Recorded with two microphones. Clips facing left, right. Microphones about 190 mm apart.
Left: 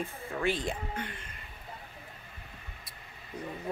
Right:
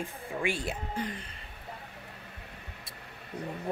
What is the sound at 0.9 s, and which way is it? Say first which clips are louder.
Speech: right 4 dB; 35° right (ahead or behind).